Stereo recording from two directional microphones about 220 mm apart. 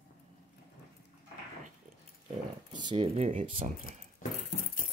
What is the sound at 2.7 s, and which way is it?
Speech, 20° right (ahead or behind).